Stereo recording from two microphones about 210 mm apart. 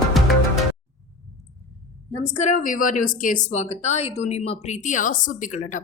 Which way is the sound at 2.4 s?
35° left (ahead or behind).